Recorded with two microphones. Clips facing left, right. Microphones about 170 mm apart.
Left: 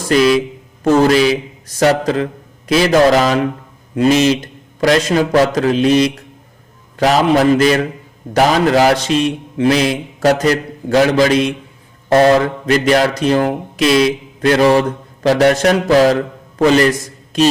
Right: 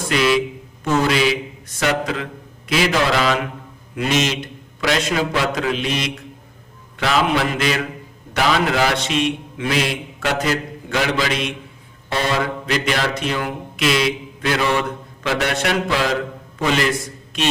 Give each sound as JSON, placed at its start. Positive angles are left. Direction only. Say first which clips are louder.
{"t": 0.1, "sound": "a man's voice", "louder": "left 6 dB", "side_deg": 40}